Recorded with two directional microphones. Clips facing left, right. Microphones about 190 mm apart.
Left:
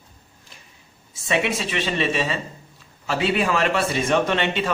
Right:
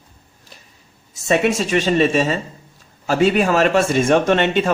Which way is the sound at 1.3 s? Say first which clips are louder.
Right 7 dB; 45° right (ahead or behind).